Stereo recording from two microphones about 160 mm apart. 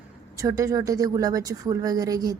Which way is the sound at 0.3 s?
20° right (ahead or behind).